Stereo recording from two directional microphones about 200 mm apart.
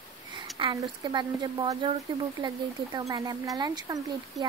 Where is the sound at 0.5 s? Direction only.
20° right (ahead or behind).